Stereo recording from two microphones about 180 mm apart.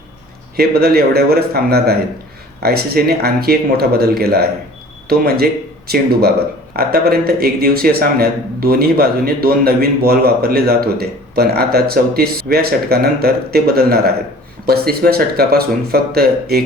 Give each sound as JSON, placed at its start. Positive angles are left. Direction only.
{"t": 0.5, "sound": "a man's voice", "side_deg": -60}